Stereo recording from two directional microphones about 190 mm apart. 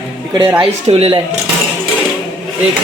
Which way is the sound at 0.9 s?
30° right (ahead or behind).